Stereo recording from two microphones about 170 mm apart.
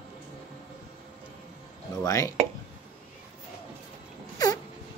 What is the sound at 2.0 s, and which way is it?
Speech, 20° left (ahead or behind).